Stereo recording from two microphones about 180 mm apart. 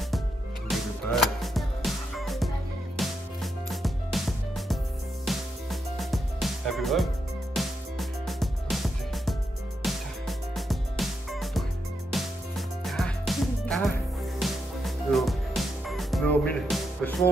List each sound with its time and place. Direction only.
0.7 s music: centre (ahead or behind)